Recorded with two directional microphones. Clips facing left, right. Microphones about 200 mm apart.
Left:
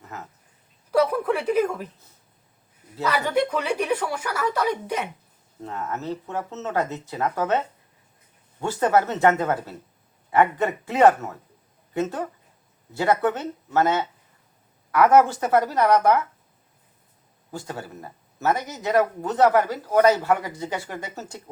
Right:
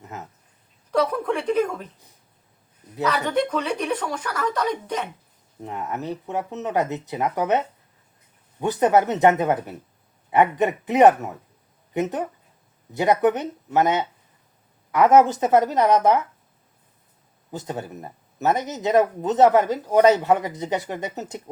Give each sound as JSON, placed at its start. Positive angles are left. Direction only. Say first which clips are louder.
{"t": 0.0, "sound": "a sound", "louder": "right 2 dB", "side_deg": -20}
{"t": 0.9, "sound": "a sound", "louder": "left 1 dB", "side_deg": 5}
{"t": 3.1, "sound": "speech", "louder": "even", "side_deg": 10}
{"t": 5.6, "sound": "speech", "louder": "right 1 dB", "side_deg": -15}
{"t": 8.6, "sound": "speech", "louder": "right 2 dB", "side_deg": -15}
{"t": 17.5, "sound": "speech", "louder": "right 3 dB", "side_deg": -20}